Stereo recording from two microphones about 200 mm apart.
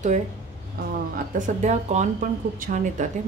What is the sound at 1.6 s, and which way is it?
A woman's voice, 35° right (ahead or behind).